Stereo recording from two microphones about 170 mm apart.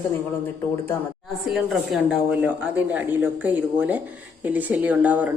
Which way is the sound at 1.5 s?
5° right (ahead or behind).